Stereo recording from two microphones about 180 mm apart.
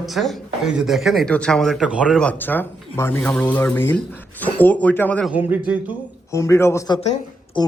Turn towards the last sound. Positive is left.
turn(degrees=25)  # may be behind; listen again after turning